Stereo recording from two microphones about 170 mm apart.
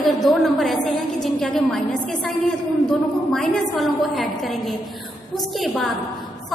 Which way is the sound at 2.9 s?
Centre (ahead or behind).